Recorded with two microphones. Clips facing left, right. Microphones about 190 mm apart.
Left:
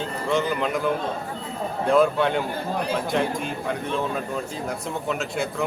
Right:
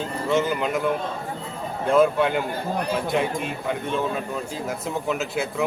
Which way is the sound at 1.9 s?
Centre (ahead or behind).